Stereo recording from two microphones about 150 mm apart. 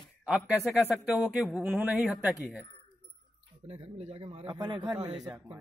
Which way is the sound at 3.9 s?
45° right (ahead or behind).